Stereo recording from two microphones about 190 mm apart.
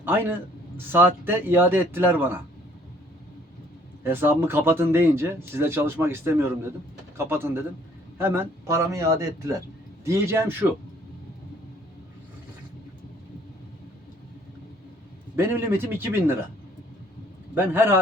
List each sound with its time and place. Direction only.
0.0 s speech: 10° right (ahead or behind)
4.0 s speech: 10° right (ahead or behind)
15.4 s speech: 10° right (ahead or behind)
17.5 s speech: 10° right (ahead or behind)